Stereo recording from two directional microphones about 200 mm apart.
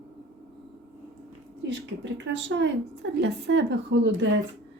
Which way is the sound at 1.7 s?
60° right (ahead or behind).